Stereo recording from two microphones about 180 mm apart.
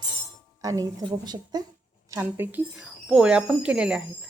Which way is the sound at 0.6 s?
20° right (ahead or behind).